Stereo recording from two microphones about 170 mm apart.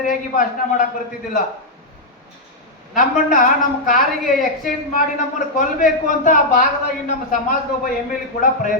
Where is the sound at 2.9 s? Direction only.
55° left (ahead or behind).